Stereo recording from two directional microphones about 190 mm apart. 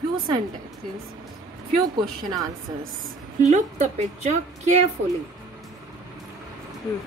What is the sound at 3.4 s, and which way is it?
A woman's voice, 35° right (ahead or behind).